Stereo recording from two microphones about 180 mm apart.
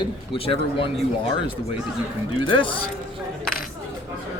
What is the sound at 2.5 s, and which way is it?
Speech, 30° left (ahead or behind).